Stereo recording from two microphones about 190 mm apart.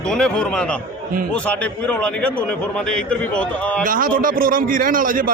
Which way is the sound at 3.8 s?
45° right (ahead or behind).